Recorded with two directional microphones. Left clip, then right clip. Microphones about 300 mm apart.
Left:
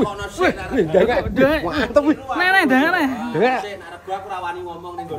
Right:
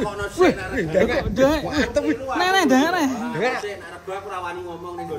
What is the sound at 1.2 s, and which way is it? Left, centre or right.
Speech, centre.